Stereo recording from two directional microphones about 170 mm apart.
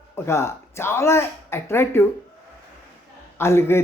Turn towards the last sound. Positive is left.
turn(degrees=15)  # may be behind; listen again after turning